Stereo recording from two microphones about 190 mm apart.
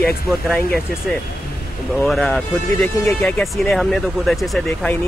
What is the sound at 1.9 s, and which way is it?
Speech, centre (ahead or behind).